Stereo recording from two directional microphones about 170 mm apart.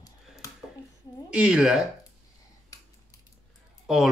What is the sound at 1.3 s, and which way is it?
Speech, 5° right (ahead or behind).